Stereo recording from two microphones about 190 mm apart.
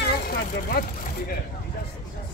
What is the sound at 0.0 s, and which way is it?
Vehicle, 55° left (ahead or behind).